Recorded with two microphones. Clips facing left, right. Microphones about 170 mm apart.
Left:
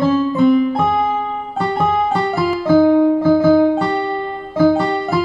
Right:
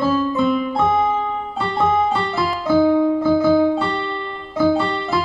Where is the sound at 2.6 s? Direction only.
50° left (ahead or behind).